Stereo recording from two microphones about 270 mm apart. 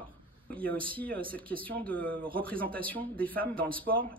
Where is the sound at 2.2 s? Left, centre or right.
Centre.